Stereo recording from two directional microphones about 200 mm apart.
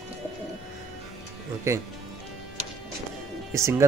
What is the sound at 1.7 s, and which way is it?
Speech, 15° right (ahead or behind).